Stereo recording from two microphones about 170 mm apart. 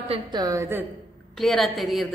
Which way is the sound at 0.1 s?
25° right (ahead or behind).